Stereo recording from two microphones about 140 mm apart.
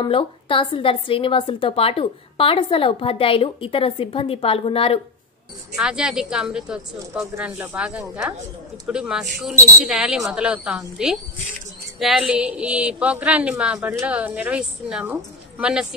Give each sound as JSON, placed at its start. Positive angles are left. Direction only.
{"t": 0.0, "sound": "a woman's voice", "side_deg": 35}
{"t": 5.8, "sound": "a woman's voice", "side_deg": -5}